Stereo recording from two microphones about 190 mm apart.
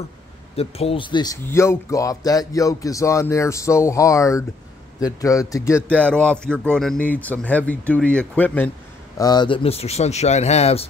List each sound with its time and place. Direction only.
0.6 s speech: 30° left (ahead or behind)
5.9 s speech: 5° left (ahead or behind)
9.2 s speech: 20° left (ahead or behind)